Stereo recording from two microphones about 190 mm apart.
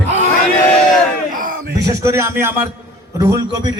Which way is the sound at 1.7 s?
15° right (ahead or behind).